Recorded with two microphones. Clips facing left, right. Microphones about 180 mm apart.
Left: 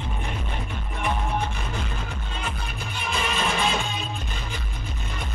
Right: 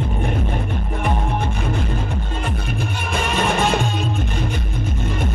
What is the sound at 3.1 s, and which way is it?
Music, 60° right (ahead or behind).